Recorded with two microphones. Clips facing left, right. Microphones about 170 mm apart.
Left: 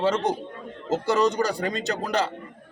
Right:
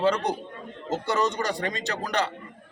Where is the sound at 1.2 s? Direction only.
35° left (ahead or behind).